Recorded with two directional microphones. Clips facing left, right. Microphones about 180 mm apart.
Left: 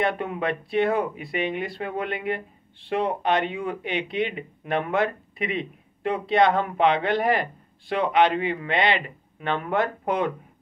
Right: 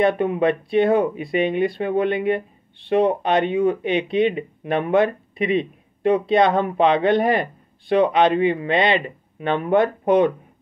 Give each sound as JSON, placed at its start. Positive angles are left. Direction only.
{"t": 0.2, "sound": "speech", "side_deg": -20}